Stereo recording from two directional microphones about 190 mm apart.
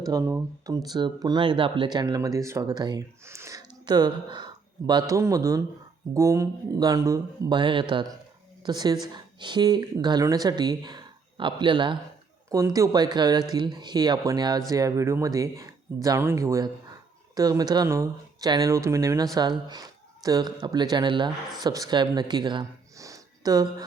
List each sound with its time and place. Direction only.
0.1 s speech: 15° right (ahead or behind)